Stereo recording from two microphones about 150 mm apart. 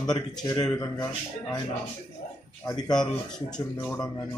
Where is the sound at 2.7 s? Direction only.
25° left (ahead or behind).